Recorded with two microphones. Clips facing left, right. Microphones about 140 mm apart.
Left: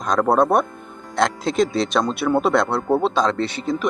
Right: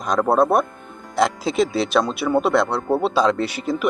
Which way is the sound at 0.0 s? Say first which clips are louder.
Even; 5° right (ahead or behind).